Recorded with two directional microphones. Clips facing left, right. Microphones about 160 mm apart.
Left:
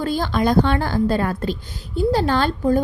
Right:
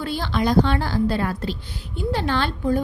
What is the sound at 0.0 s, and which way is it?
A woman's voice, 45° left (ahead or behind).